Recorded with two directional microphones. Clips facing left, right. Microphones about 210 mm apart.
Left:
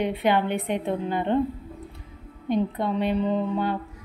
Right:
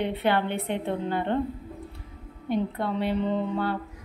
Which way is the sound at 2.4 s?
20° left (ahead or behind).